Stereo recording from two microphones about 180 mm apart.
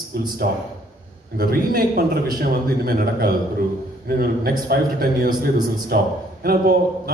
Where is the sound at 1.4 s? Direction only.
55° right (ahead or behind).